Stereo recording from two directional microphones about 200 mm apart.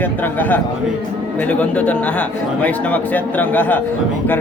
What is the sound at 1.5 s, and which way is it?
Speech, 5° left (ahead or behind).